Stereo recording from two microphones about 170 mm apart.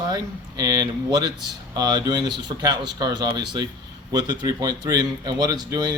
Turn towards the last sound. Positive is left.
turn(degrees=-25)  # may be behind; listen again after turning